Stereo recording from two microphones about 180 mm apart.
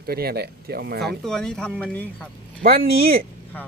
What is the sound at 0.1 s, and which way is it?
Speech, 60° right (ahead or behind).